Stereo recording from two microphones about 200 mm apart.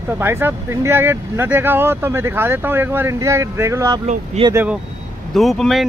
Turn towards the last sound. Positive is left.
turn(degrees=0)  # may be behind; listen again after turning